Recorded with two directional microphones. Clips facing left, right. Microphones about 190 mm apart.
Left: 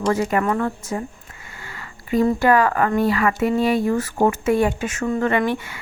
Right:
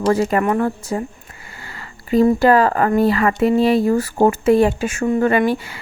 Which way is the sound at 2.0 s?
35° right (ahead or behind).